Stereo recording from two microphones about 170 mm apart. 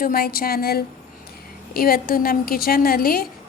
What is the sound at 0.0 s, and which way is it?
A woman's voice, 65° left (ahead or behind).